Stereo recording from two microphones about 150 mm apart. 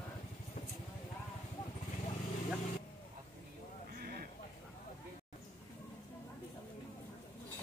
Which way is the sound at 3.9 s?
85° right.